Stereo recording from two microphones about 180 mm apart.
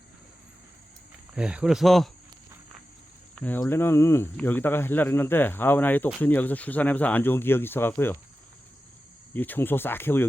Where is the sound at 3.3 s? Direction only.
5° left (ahead or behind).